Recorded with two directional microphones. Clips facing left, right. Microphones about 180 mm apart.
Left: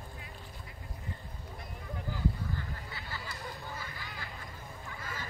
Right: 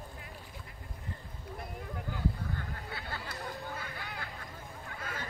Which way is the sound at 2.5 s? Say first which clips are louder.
Right 1 dB; 60° right (ahead or behind).